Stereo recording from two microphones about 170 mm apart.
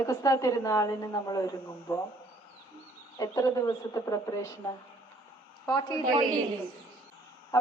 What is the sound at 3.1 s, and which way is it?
A woman's voice, 20° left (ahead or behind).